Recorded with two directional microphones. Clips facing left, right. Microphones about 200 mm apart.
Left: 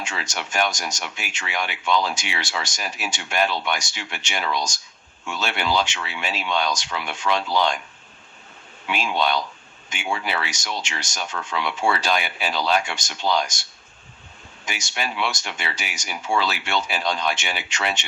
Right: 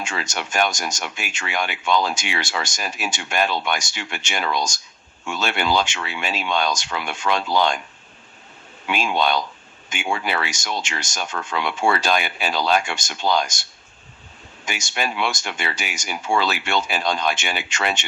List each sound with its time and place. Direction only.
0.0 s speech: 50° right (ahead or behind)
8.9 s speech: 50° right (ahead or behind)
14.7 s speech: 50° right (ahead or behind)